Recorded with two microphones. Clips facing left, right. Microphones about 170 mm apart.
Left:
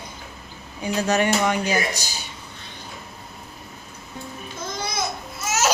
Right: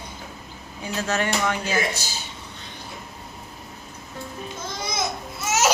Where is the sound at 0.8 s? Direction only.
15° left (ahead or behind).